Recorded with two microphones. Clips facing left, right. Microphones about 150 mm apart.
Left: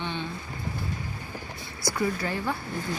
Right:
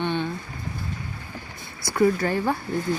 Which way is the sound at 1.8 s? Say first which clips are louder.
Right 7 dB; 50° right (ahead or behind).